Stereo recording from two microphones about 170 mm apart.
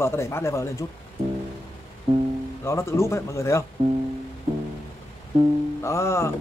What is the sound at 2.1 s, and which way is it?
Music, 35° right (ahead or behind).